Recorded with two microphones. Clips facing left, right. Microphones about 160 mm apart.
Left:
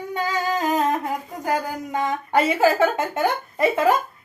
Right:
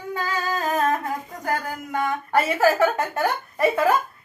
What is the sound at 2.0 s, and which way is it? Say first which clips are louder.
A woman's voice: left 2 dB; 20° left (ahead or behind).